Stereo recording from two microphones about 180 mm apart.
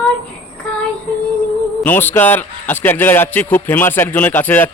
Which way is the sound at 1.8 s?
10° left (ahead or behind).